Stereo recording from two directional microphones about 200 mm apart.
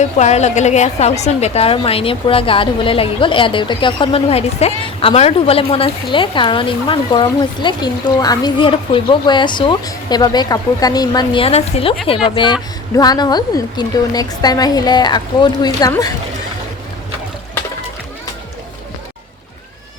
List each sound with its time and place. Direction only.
0.0 s a woman's voice: 35° left (ahead or behind); by 16.1 s 20° left (ahead or behind)